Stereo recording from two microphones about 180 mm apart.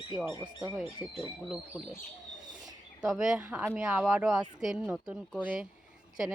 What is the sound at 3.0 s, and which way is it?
Speech, 5° right (ahead or behind).